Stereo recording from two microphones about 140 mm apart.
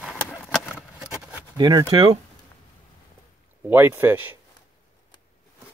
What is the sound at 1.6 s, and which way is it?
Speech, 30° right (ahead or behind).